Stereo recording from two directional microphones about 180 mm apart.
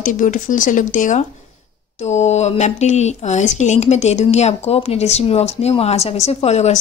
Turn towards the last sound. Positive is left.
turn(degrees=35)  # may be behind; listen again after turning